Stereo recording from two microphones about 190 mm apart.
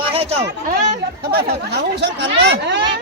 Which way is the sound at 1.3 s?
55° right (ahead or behind).